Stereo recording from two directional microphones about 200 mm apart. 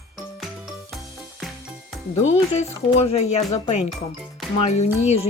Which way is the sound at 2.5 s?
30° left (ahead or behind).